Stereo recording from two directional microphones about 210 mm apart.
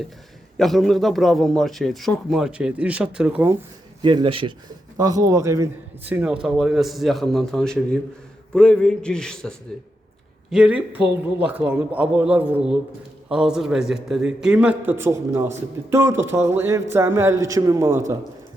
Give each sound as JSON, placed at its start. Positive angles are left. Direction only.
{"t": 0.5, "sound": "speech", "side_deg": 0}
{"t": 4.0, "sound": "a man's voice", "side_deg": -25}